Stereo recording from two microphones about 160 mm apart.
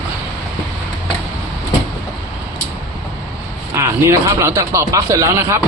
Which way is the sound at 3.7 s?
20° right (ahead or behind).